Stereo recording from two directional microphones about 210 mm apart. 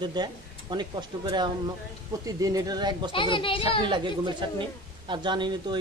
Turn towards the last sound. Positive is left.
turn(degrees=-20)  # may be behind; listen again after turning